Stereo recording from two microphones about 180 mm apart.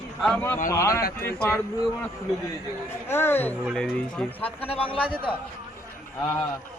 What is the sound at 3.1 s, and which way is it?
Speech, 10° left (ahead or behind).